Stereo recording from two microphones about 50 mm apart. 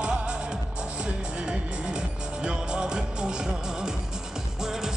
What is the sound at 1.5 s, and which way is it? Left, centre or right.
Music, centre.